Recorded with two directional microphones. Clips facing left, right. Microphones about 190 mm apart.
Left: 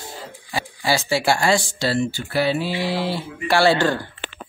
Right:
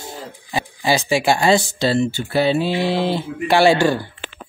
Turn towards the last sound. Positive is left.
turn(degrees=-15)  # may be behind; listen again after turning